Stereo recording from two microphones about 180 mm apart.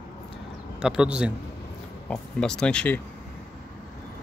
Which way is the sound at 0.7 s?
5° right (ahead or behind).